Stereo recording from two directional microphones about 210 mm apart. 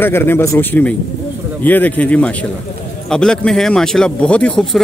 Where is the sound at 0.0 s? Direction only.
10° left (ahead or behind).